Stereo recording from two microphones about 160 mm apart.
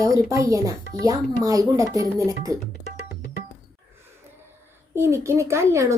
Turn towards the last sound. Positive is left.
turn(degrees=-15)  # may be behind; listen again after turning